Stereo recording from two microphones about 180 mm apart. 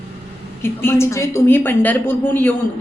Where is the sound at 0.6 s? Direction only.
15° left (ahead or behind).